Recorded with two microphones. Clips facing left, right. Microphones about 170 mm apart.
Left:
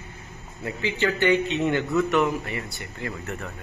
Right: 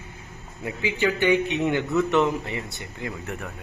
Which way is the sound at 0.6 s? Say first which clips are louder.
Right 1 dB; 10° right (ahead or behind).